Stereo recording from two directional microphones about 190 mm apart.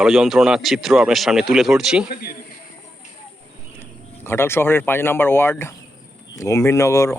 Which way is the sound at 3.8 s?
10° left (ahead or behind).